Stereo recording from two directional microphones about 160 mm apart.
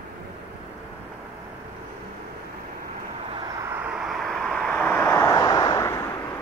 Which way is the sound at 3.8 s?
5° right (ahead or behind).